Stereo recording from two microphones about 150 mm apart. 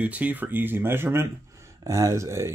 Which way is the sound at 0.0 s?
10° right (ahead or behind).